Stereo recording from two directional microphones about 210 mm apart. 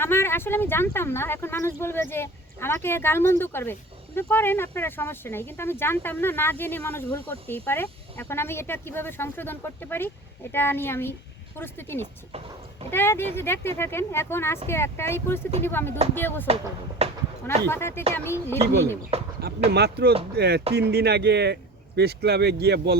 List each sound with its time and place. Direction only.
0.0 s speech: 10° left (ahead or behind)
17.0 s a sound: 30° right (ahead or behind)
17.7 s speech: 10° left (ahead or behind)
19.4 s speech: 50° right (ahead or behind)